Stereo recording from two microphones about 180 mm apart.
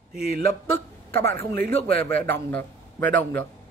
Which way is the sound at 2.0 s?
10° left (ahead or behind).